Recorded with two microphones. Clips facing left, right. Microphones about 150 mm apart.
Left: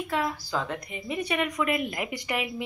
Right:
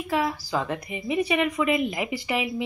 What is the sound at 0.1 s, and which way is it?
Speech, 5° right (ahead or behind).